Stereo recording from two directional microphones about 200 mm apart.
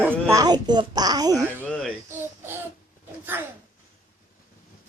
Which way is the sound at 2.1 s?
10° right (ahead or behind).